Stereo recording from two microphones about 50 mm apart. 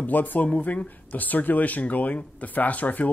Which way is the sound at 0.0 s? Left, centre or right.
Left.